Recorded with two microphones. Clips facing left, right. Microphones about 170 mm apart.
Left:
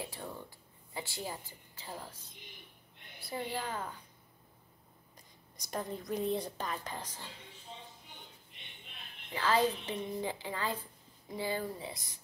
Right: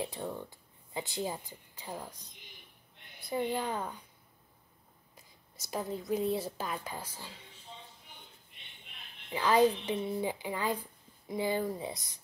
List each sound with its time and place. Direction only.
0.0 s a woman's voice: 20° right (ahead or behind)
5.1 s a woman's voice: 5° right (ahead or behind)
9.3 s a woman's voice: 15° right (ahead or behind)